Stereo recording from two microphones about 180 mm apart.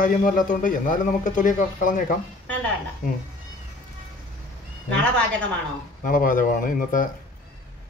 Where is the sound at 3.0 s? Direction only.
50° left (ahead or behind).